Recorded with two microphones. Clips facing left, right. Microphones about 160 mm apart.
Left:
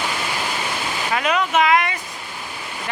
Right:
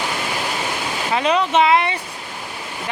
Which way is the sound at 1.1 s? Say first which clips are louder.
Right 3 dB; 30° right (ahead or behind).